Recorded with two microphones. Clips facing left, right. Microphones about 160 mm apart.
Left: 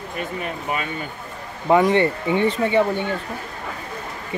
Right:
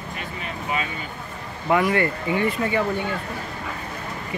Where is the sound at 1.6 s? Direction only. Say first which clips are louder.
Left 4 dB; 25° left (ahead or behind).